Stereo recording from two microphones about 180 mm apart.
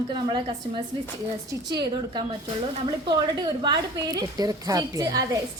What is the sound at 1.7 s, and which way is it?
A woman's voice, 25° right (ahead or behind).